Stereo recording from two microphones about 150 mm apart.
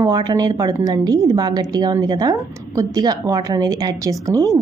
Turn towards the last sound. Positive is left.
turn(degrees=-20)  # may be behind; listen again after turning